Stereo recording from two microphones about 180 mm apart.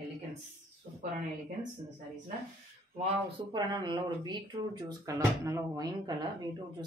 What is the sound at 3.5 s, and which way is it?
Speech, 25° right (ahead or behind).